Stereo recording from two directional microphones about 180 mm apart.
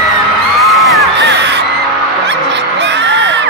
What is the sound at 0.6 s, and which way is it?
Crowd, centre (ahead or behind).